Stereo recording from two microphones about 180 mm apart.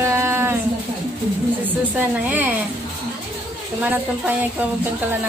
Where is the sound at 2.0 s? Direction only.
10° right (ahead or behind).